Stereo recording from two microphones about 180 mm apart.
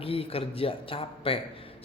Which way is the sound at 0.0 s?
30° left (ahead or behind).